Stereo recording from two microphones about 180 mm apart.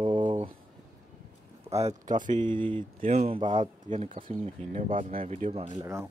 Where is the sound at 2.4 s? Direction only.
25° right (ahead or behind); by 5.2 s 45° right (ahead or behind).